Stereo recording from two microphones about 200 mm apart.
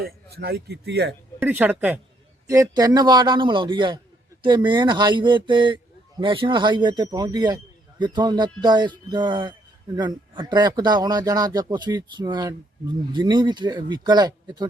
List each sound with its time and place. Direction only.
0.0 s speech: 55° right (ahead or behind)
1.4 s a woman's voice: 10° right (ahead or behind)